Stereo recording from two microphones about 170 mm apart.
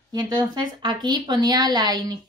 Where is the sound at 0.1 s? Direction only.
25° right (ahead or behind).